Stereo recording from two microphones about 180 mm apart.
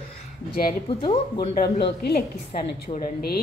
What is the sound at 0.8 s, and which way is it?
Speech, 25° left (ahead or behind).